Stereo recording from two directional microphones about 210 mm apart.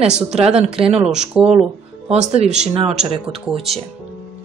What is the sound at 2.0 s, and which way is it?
Speech, 30° right (ahead or behind).